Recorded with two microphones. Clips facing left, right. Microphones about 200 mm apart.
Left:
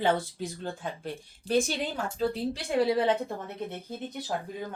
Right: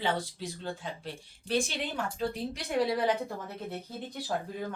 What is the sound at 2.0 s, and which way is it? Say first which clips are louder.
A woman's voice: left 4 dB; 30° left (ahead or behind).